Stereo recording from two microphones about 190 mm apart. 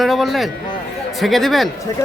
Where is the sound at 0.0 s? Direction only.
Centre (ahead or behind).